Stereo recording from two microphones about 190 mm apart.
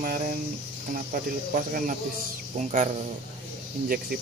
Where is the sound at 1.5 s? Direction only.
50° right (ahead or behind).